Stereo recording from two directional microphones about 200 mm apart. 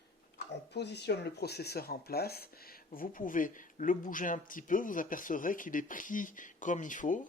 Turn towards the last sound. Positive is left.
turn(degrees=40)  # may be behind; listen again after turning